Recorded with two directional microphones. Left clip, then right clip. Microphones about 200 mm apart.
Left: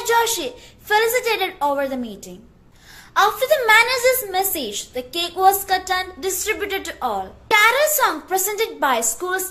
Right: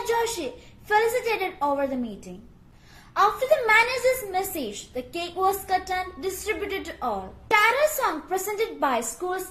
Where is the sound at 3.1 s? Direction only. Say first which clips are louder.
Left 4 dB; 10° right (ahead or behind).